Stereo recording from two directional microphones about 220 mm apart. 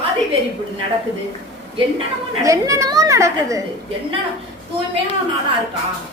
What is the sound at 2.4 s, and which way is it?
A woman's voice, 15° right (ahead or behind).